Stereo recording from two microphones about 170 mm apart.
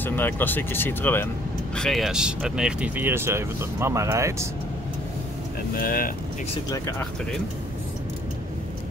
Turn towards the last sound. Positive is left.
turn(degrees=15)  # may be behind; listen again after turning